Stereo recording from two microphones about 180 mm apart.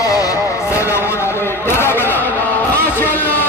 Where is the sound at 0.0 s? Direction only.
20° left (ahead or behind).